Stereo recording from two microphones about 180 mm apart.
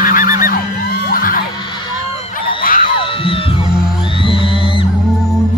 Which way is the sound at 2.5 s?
50° left (ahead or behind).